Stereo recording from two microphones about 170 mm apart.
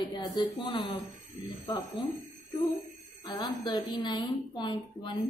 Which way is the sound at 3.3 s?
25° left (ahead or behind).